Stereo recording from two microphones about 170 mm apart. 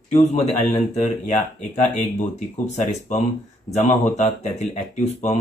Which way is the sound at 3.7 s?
40° left (ahead or behind).